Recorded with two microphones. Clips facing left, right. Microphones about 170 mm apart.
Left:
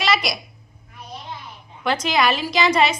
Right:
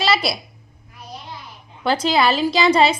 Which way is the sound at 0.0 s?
30° right (ahead or behind).